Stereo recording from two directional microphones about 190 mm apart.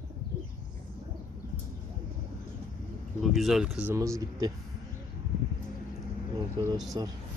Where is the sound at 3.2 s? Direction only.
Centre (ahead or behind); by 4.5 s 15° right (ahead or behind).